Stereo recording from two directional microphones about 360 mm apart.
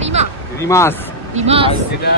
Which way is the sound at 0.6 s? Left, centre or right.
Centre.